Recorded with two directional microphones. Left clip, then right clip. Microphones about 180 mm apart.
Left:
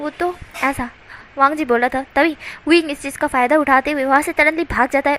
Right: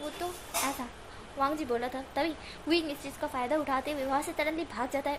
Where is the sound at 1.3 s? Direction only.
30° left (ahead or behind).